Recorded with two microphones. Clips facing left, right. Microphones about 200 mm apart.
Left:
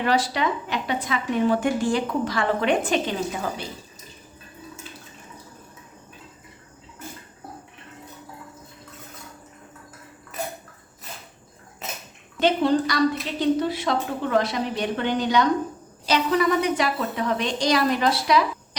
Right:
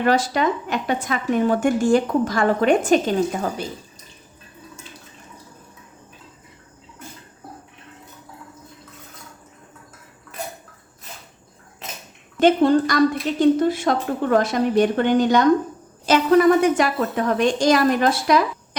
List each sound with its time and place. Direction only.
0.0 s a woman's voice: 45° right (ahead or behind)
12.4 s a woman's voice: 50° right (ahead or behind)